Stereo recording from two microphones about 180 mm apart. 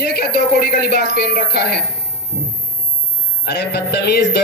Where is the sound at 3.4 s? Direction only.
65° left (ahead or behind).